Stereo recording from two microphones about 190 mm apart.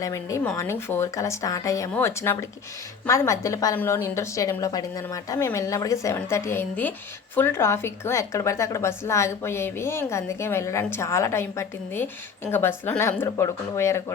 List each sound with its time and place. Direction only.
0.0 s a woman's voice: 15° left (ahead or behind)